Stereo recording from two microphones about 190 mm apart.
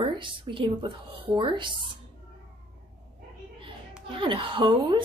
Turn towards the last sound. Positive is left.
turn(degrees=-25)  # may be behind; listen again after turning